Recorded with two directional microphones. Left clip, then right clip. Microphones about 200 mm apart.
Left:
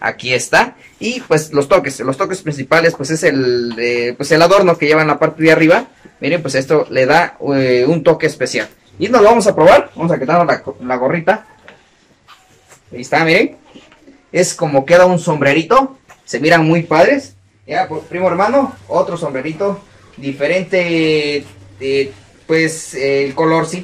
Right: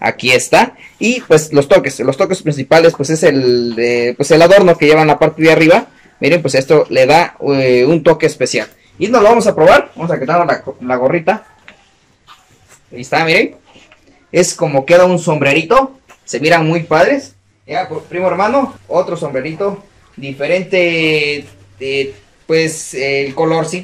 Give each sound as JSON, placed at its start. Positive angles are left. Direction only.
{"t": 0.0, "sound": "speech", "side_deg": -20}
{"t": 9.0, "sound": "speech", "side_deg": 0}
{"t": 12.9, "sound": "speech", "side_deg": 0}
{"t": 20.2, "sound": "speech", "side_deg": -5}